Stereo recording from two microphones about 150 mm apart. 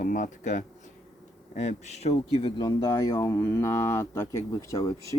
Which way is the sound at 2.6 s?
25° left (ahead or behind).